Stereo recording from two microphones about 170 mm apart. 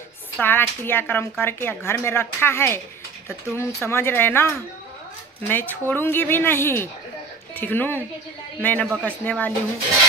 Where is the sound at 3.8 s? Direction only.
15° left (ahead or behind).